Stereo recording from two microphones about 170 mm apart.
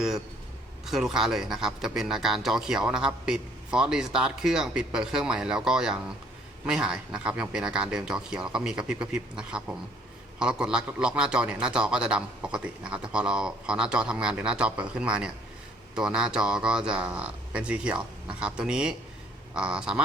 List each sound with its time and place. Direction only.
0.9 s speech: 5° right (ahead or behind)